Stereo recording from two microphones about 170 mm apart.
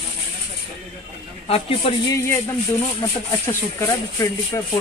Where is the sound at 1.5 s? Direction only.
35° left (ahead or behind).